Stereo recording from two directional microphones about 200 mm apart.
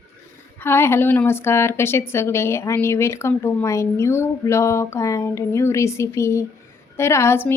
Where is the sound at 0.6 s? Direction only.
10° left (ahead or behind).